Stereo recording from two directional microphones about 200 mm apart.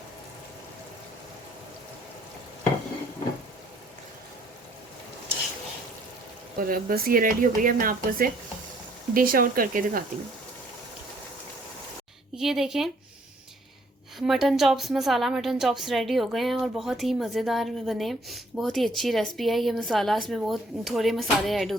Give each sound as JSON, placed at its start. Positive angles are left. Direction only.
{"t": 6.6, "sound": "speech", "side_deg": -45}
{"t": 12.4, "sound": "a woman's voice", "side_deg": 0}
{"t": 14.2, "sound": "a woman's voice", "side_deg": 0}